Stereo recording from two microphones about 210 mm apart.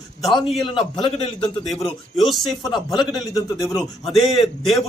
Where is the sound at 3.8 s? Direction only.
Centre (ahead or behind).